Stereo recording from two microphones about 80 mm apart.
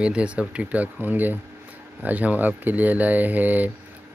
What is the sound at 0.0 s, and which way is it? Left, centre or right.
Speech, centre.